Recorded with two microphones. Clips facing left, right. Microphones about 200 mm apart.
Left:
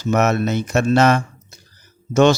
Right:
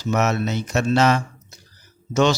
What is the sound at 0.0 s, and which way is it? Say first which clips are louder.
Speech: left 4 dB; 50° left (ahead or behind).